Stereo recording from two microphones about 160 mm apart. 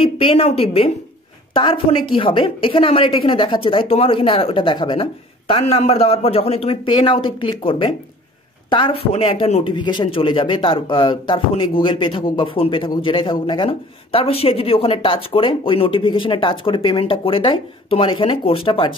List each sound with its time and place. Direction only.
0.0 s a woman's voice: 35° left (ahead or behind)
5.5 s speech: 40° left (ahead or behind)